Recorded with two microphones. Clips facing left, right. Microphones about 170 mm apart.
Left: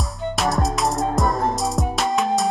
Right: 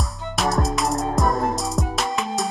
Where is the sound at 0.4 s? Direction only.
Centre (ahead or behind).